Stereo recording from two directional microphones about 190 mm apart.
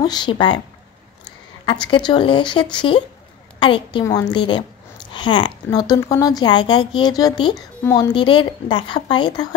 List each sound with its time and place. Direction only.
0.0 s a woman's voice: 20° left (ahead or behind)
1.7 s a woman's voice: 25° left (ahead or behind)